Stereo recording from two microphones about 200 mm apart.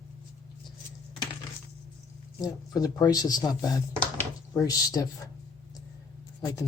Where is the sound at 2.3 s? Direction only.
20° left (ahead or behind).